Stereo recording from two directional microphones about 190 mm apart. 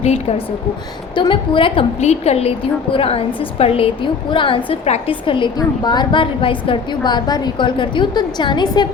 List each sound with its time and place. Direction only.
0.0 s a woman's voice: 35° left (ahead or behind)